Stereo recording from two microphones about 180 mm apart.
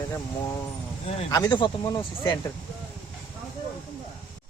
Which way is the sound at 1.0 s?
35° left (ahead or behind).